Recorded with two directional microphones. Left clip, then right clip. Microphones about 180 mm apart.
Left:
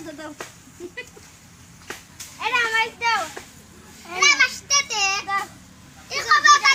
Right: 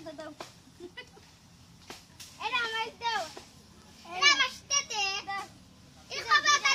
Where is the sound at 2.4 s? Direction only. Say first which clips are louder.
Left 11 dB; 10° right (ahead or behind).